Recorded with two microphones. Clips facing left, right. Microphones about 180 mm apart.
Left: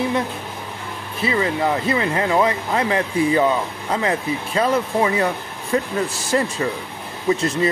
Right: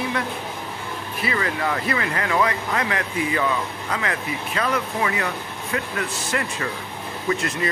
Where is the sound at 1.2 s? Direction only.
25° left (ahead or behind).